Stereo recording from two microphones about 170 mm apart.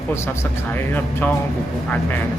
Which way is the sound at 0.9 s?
10° left (ahead or behind).